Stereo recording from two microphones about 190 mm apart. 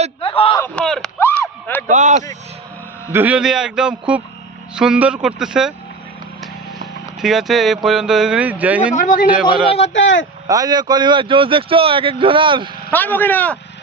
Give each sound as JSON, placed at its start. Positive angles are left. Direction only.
{"t": 0.2, "sound": "a sound", "side_deg": 30}
{"t": 0.6, "sound": "a sound", "side_deg": 5}
{"t": 1.9, "sound": "speech", "side_deg": -40}
{"t": 3.1, "sound": "a man's voice", "side_deg": -10}
{"t": 7.2, "sound": "a man's voice", "side_deg": 0}
{"t": 9.0, "sound": "a man's voice", "side_deg": 45}
{"t": 9.3, "sound": "a man's voice", "side_deg": -5}
{"t": 9.9, "sound": "speech", "side_deg": 75}
{"t": 10.4, "sound": "speech", "side_deg": -20}
{"t": 12.9, "sound": "speech", "side_deg": 10}